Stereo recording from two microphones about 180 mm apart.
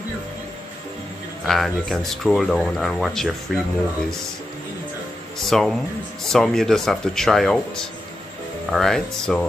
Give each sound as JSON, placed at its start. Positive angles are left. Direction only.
{"t": 1.5, "sound": "speech", "side_deg": 0}
{"t": 5.4, "sound": "speech", "side_deg": 0}